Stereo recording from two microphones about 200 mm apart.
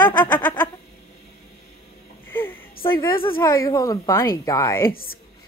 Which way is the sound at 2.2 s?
10° left (ahead or behind).